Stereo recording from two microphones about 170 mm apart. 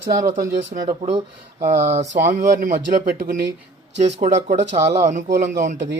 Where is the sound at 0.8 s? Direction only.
35° right (ahead or behind).